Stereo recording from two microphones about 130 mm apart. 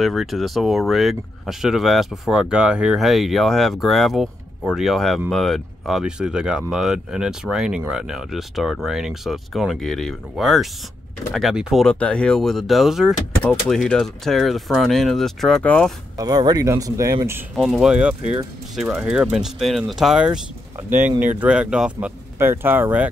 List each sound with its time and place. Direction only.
0.0 s speech: centre (ahead or behind)
16.2 s speech: 30° right (ahead or behind)
17.6 s speech: 5° right (ahead or behind)
22.4 s speech: 15° right (ahead or behind)